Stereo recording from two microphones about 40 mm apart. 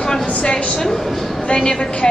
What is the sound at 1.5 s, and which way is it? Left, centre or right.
Speech, left.